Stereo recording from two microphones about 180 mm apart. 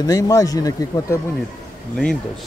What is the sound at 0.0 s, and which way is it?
Speech, 20° left (ahead or behind).